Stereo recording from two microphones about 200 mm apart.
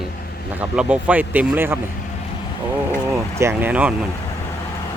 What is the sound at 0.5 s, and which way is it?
Speech, 5° right (ahead or behind).